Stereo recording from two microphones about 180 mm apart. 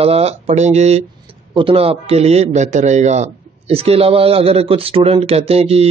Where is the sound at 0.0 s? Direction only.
35° right (ahead or behind).